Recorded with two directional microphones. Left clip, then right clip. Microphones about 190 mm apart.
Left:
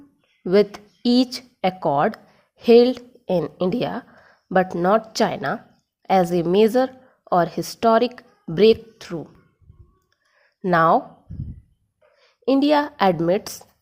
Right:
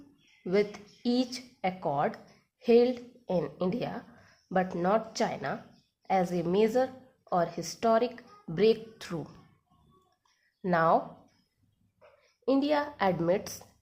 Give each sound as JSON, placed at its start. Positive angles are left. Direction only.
{"t": 0.4, "sound": "a woman's voice", "side_deg": 40}
{"t": 9.0, "sound": "speech", "side_deg": 25}
{"t": 10.6, "sound": "speech", "side_deg": 40}
{"t": 12.5, "sound": "a woman's voice", "side_deg": 35}